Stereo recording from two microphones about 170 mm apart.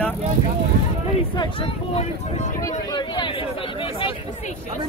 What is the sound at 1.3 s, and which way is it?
Speech, 30° left (ahead or behind).